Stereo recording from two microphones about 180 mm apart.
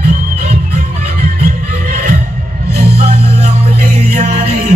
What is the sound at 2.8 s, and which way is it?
Music, 35° right (ahead or behind).